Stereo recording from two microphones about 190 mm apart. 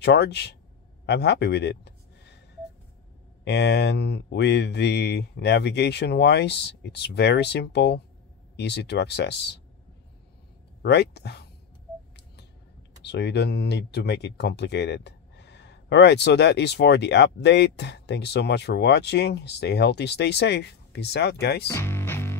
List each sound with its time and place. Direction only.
0.0 s speech: 60° left (ahead or behind)
1.0 s a sound: 65° left (ahead or behind)
3.4 s speech: 65° left (ahead or behind)
10.8 s speech: 60° left (ahead or behind)
13.0 s speech: 60° left (ahead or behind)
21.6 s music: 15° left (ahead or behind)